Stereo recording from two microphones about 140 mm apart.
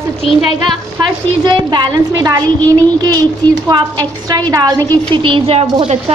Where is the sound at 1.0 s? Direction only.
35° right (ahead or behind).